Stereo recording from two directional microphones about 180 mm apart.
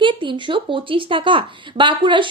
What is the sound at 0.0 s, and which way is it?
Speech, 25° right (ahead or behind).